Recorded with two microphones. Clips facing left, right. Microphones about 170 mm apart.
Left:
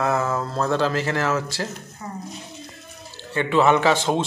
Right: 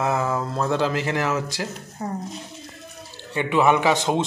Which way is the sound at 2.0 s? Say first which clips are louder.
Right 7 dB; 40° right (ahead or behind).